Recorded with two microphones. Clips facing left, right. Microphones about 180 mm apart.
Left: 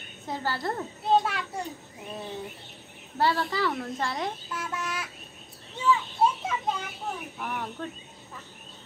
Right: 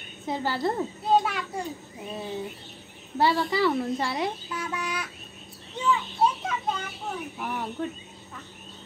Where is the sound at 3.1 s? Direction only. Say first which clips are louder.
Right 3 dB; 15° right (ahead or behind).